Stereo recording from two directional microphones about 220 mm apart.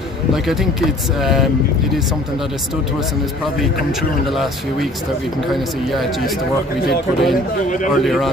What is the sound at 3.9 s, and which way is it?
A man's voice, centre (ahead or behind).